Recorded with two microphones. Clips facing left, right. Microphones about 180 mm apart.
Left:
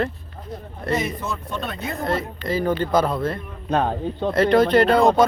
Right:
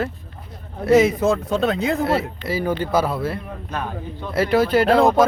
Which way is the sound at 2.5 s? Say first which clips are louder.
Left 1 dB; 10° right (ahead or behind).